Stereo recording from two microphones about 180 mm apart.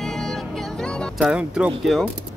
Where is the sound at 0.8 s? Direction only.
Centre (ahead or behind).